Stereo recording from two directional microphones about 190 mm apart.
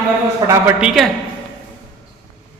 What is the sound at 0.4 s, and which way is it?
Speech, 20° right (ahead or behind).